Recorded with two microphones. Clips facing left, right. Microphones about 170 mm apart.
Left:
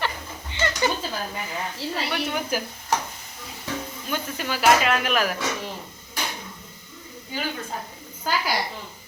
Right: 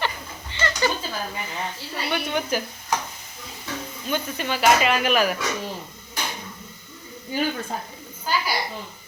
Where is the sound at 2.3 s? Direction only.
5° left (ahead or behind).